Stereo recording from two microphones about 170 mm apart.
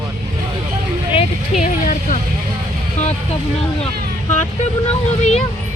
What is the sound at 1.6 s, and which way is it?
Music, 50° left (ahead or behind).